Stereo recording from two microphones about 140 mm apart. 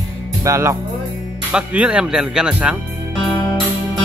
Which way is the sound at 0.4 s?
20° right (ahead or behind).